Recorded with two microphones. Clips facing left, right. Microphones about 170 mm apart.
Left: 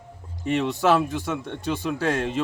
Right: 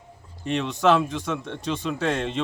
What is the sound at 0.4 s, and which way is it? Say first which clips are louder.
Speech: even; 5° left (ahead or behind).